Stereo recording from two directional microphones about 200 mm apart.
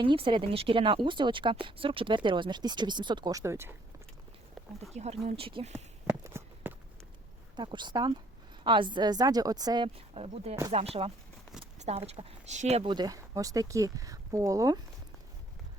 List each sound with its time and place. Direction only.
0.0 s speech: 25° right (ahead or behind)
4.9 s speech: 30° right (ahead or behind)
6.2 s walk: 10° right (ahead or behind)
7.5 s speech: 25° right (ahead or behind)